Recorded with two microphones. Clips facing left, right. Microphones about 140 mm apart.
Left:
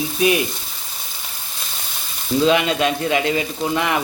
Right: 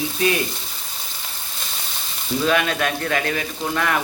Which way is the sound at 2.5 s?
20° left (ahead or behind).